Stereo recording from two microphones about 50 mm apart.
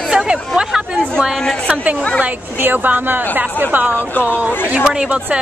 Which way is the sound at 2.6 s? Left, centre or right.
Right.